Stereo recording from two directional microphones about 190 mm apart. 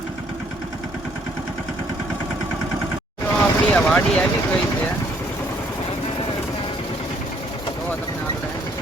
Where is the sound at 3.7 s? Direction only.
5° left (ahead or behind).